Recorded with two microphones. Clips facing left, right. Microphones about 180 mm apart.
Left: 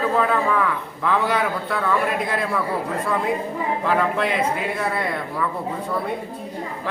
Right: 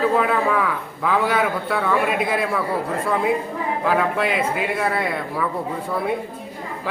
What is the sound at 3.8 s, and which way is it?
A man's voice, 5° right (ahead or behind).